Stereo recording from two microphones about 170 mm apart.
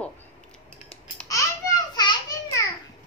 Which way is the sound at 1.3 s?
20° left (ahead or behind).